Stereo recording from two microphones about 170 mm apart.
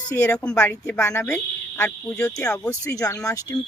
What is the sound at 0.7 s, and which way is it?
Speech, 20° left (ahead or behind).